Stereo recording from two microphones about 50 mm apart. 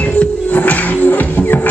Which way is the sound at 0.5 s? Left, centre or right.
Left.